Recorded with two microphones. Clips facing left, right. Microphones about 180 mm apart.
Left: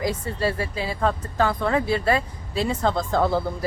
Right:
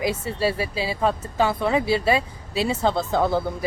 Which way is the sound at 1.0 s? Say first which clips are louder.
Right 1 dB; 10° right (ahead or behind).